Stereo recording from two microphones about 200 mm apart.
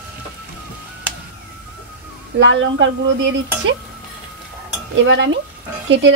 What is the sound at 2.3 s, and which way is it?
Speech, 70° right (ahead or behind).